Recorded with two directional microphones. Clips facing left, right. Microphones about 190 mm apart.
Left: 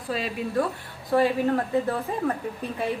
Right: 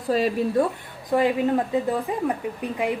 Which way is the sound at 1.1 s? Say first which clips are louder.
Right 1 dB; 15° right (ahead or behind).